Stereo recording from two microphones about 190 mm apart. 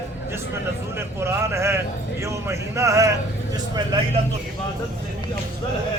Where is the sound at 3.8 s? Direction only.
25° right (ahead or behind).